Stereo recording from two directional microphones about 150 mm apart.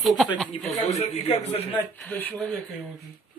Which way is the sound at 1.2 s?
45° left (ahead or behind).